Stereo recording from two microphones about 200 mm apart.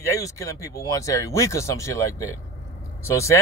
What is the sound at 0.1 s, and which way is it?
Speech, 15° left (ahead or behind).